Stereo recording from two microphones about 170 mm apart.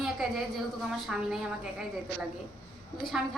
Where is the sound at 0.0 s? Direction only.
Centre (ahead or behind).